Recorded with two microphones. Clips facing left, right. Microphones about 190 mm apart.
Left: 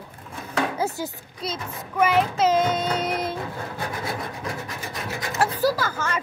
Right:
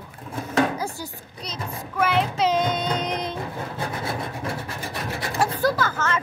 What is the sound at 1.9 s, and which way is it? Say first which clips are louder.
Speech: left 2 dB; 10° left (ahead or behind).